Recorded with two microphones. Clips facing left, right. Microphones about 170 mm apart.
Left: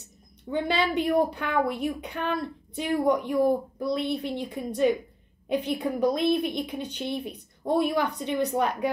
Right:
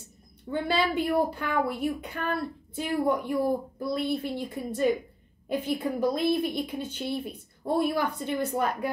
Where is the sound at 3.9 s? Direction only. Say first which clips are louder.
Left 1 dB; 20° left (ahead or behind).